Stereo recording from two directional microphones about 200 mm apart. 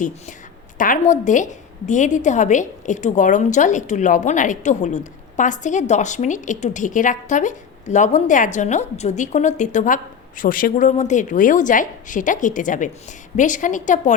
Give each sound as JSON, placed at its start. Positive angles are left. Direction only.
{"t": 0.8, "sound": "a woman's voice", "side_deg": 40}